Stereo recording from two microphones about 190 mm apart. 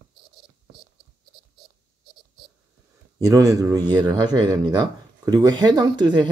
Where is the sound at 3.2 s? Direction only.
15° right (ahead or behind).